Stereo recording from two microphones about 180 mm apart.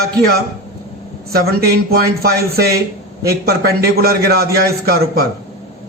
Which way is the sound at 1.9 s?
60° right (ahead or behind).